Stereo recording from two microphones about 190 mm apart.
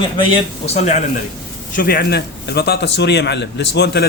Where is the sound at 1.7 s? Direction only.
50° left (ahead or behind).